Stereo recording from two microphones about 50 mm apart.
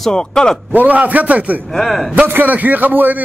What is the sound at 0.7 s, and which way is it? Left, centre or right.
Speech, right.